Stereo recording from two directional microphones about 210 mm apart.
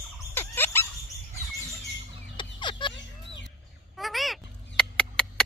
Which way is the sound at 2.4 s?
20° left (ahead or behind).